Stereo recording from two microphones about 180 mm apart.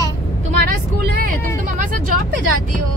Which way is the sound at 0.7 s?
55° right (ahead or behind).